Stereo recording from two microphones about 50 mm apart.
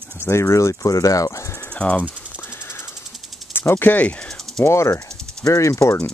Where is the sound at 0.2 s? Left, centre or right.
Left.